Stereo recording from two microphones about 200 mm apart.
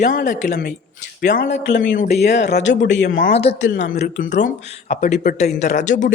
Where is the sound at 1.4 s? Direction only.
60° left (ahead or behind).